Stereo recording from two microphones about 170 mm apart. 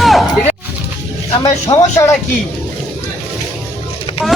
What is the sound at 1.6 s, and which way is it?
Speech, 20° left (ahead or behind).